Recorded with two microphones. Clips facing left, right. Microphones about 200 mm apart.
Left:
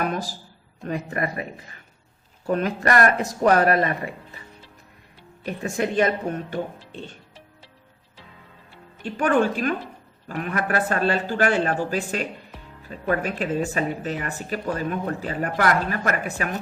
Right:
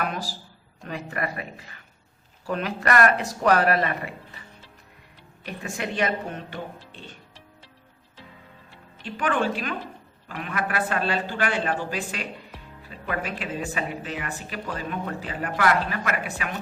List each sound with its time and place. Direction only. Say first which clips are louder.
0.9 s speech: left 4 dB; 40° left (ahead or behind)
5.4 s a woman's voice: left 7 dB; 45° left (ahead or behind)
9.0 s a woman's voice: left 5 dB; 45° left (ahead or behind)